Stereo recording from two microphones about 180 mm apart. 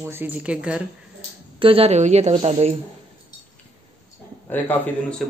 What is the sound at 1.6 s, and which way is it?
A woman's voice, 30° right (ahead or behind).